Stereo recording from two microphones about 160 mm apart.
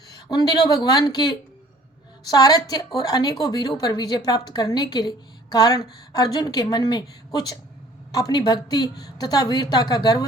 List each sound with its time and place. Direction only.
0.1 s a woman's voice: 25° left (ahead or behind)